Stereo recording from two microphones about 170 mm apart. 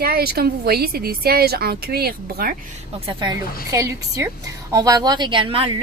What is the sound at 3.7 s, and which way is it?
A woman's voice, 20° right (ahead or behind).